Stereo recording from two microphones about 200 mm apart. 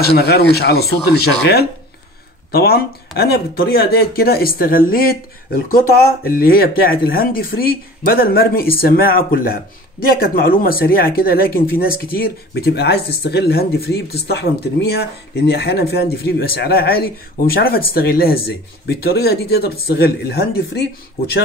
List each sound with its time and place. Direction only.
0.0 s speech: 55° left (ahead or behind)